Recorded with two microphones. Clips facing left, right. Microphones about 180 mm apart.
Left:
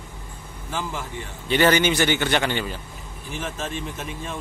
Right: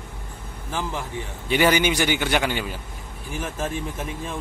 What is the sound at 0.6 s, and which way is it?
A man's voice, 15° right (ahead or behind).